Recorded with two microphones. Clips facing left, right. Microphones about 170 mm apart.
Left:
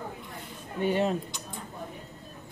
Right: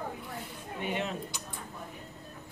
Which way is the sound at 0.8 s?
35° left (ahead or behind).